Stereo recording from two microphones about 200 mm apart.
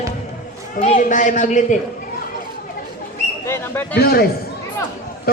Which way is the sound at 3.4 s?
10° left (ahead or behind).